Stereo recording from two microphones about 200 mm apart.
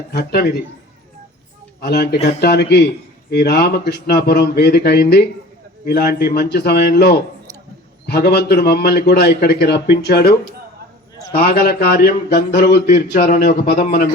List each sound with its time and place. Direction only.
0.1 s a man's voice: 55° left (ahead or behind)
1.8 s a man's voice: 55° left (ahead or behind)
11.3 s a man's voice: 50° left (ahead or behind)